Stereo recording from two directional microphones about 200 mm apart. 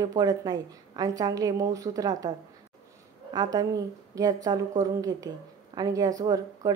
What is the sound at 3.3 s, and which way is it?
A woman's voice, 20° right (ahead or behind).